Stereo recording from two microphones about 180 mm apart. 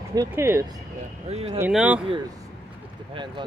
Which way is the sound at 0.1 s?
15° right (ahead or behind).